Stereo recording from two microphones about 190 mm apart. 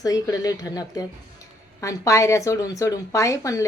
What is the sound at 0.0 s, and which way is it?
Speech, 20° left (ahead or behind).